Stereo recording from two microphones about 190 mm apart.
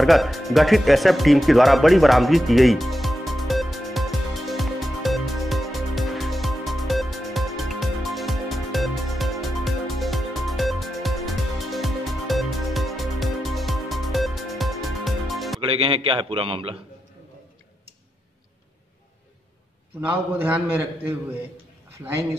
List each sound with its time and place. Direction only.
0.0 s music: centre (ahead or behind)
15.6 s a man's voice: 30° right (ahead or behind)
20.1 s a man's voice: 10° right (ahead or behind)